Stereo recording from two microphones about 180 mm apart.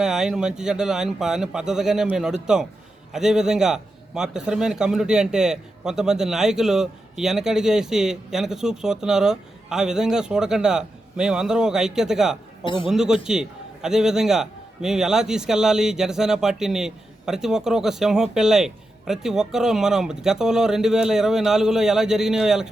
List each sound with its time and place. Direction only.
0.0 s a man's voice: 5° right (ahead or behind)
12.6 s a man's voice: 25° left (ahead or behind)
12.9 s a man's voice: 5° right (ahead or behind)